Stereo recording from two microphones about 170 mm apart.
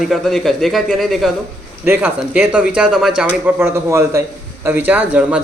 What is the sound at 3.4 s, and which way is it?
Speech, 15° right (ahead or behind).